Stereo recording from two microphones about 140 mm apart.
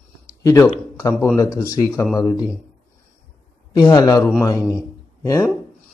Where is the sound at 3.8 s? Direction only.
30° left (ahead or behind).